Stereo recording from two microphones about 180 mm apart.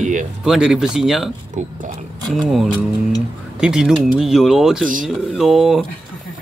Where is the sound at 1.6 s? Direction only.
40° right (ahead or behind).